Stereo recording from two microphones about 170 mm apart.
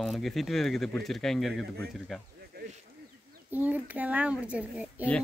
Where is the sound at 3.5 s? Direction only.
10° right (ahead or behind).